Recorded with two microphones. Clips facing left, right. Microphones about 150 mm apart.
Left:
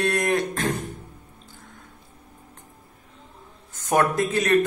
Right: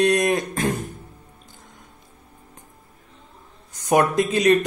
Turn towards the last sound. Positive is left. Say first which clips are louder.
# right 5 dB
turn(degrees=-15)  # may be behind; listen again after turning